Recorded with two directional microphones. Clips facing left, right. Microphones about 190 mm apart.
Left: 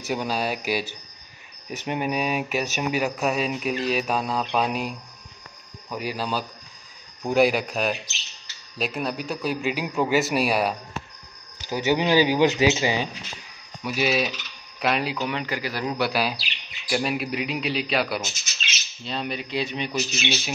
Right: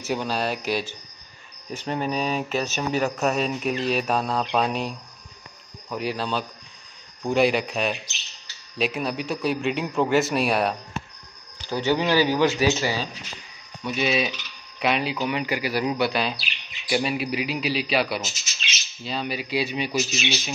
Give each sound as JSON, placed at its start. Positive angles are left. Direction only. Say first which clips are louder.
{"t": 0.1, "sound": "a man's voice", "louder": "even", "side_deg": 10}
{"t": 11.6, "sound": "speech", "louder": "even", "side_deg": 10}
{"t": 13.8, "sound": "a man's voice", "louder": "even", "side_deg": 5}
{"t": 16.0, "sound": "a man's voice", "louder": "even", "side_deg": 5}